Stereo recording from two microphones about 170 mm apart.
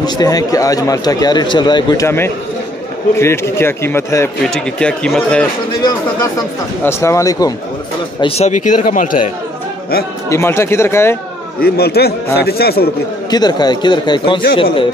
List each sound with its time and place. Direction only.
0.0 s a man's voice: 20° left (ahead or behind); by 5.4 s 5° left (ahead or behind)
5.8 s a man's voice: 25° left (ahead or behind)
8.2 s speech: 40° left (ahead or behind)
10.3 s a man's voice: 15° left (ahead or behind)
11.6 s a man's voice: 65° left (ahead or behind)
13.3 s speech: 25° left (ahead or behind)